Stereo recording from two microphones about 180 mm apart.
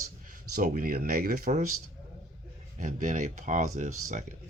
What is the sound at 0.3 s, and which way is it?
Speech, 50° right (ahead or behind).